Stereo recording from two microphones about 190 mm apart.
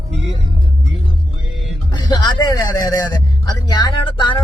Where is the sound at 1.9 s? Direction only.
20° left (ahead or behind).